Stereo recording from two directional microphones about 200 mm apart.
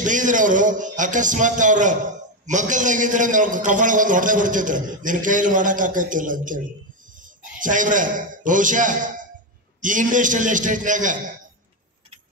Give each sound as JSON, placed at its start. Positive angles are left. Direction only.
{"t": 0.0, "sound": "a man's voice", "side_deg": -40}